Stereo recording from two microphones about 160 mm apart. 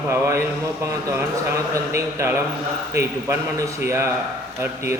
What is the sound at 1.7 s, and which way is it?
A man's voice, 20° right (ahead or behind).